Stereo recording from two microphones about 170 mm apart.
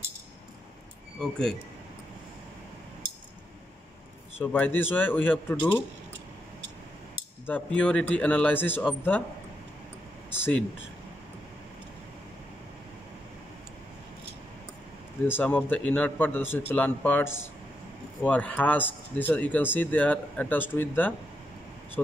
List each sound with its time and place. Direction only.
1.2 s speech: 5° left (ahead or behind)
4.4 s speech: 10° left (ahead or behind)
7.4 s speech: 10° left (ahead or behind)
10.3 s a sound: 15° left (ahead or behind)
15.2 s speech: 10° left (ahead or behind)